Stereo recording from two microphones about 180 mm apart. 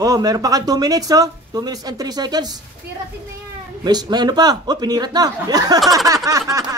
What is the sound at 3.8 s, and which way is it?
Speech, 25° right (ahead or behind).